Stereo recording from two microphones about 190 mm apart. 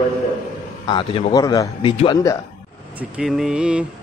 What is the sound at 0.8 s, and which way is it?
A man's voice, 25° left (ahead or behind).